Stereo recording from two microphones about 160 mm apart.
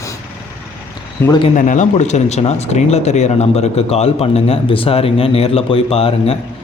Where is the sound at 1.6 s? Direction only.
55° left (ahead or behind).